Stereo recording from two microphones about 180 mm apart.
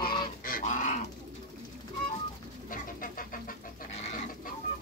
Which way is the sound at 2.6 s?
50° left (ahead or behind).